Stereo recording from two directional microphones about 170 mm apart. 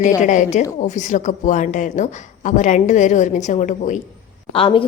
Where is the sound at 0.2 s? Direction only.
45° left (ahead or behind).